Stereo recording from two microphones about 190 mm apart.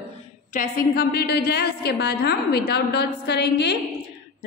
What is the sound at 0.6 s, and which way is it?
Mantra, 55° left (ahead or behind).